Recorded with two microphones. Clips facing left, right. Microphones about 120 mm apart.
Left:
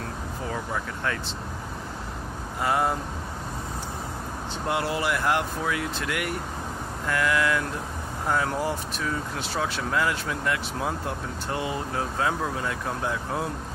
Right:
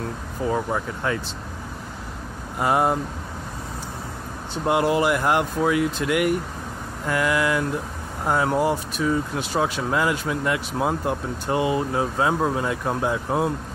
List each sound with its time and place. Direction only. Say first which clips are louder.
2.6 s speech: right 4 dB; 25° right (ahead or behind)
4.6 s speech: right 7 dB; 20° right (ahead or behind)